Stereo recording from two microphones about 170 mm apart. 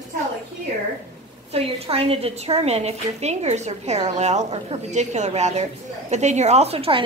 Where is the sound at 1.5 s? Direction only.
35° right (ahead or behind).